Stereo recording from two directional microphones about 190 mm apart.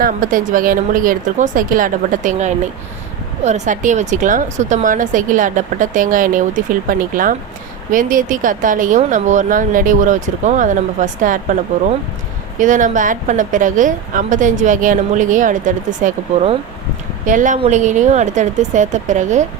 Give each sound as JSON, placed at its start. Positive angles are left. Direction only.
{"t": 0.0, "sound": "a woman's voice", "side_deg": -45}